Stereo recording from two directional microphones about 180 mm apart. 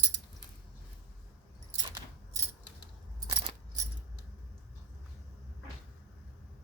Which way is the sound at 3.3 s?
25° right (ahead or behind).